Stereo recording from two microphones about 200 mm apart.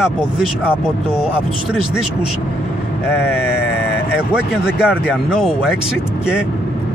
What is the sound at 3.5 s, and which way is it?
Vehicle, 55° left (ahead or behind).